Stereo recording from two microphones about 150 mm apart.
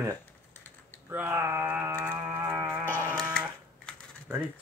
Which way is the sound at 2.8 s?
15° left (ahead or behind).